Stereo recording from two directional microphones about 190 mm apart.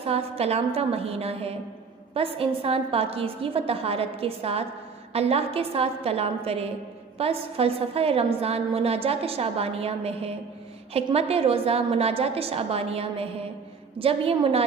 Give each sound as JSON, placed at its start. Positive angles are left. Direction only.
{"t": 0.0, "sound": "a woman's voice", "side_deg": -30}